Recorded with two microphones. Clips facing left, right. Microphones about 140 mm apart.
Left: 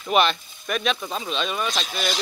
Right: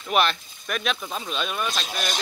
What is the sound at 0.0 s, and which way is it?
Speech, centre (ahead or behind).